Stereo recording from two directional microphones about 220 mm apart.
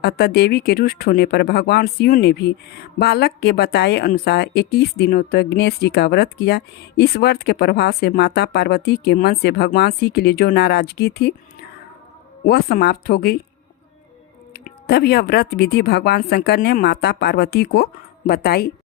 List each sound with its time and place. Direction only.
0.0 s speech: 45° left (ahead or behind)
12.5 s speech: 45° left (ahead or behind)
14.5 s speech: 45° left (ahead or behind)